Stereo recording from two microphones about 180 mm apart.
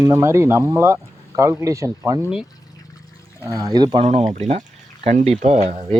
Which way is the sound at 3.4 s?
20° right (ahead or behind).